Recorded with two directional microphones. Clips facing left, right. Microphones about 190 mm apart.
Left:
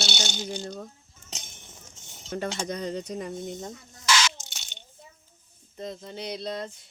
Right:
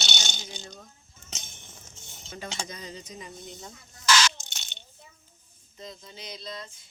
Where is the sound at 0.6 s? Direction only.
45° left (ahead or behind).